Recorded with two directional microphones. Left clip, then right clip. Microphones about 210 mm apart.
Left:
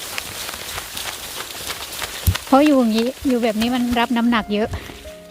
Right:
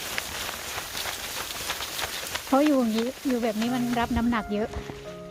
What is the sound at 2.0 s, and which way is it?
Speech, 45° left (ahead or behind).